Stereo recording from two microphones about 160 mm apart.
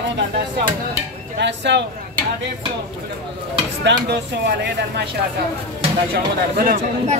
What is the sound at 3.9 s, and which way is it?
Speech, 90° right.